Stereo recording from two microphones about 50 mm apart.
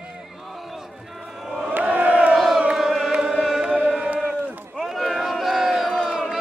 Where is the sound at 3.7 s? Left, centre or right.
Right.